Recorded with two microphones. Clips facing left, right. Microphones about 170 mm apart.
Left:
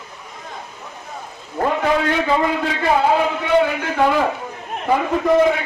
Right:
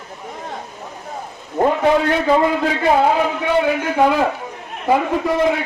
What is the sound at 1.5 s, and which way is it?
Speech, 20° right (ahead or behind).